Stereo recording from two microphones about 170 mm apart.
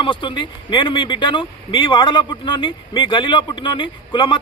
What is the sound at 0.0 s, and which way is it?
Speech, 30° left (ahead or behind).